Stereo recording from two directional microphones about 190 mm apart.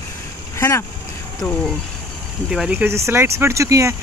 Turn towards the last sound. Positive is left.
turn(degrees=-15)  # may be behind; listen again after turning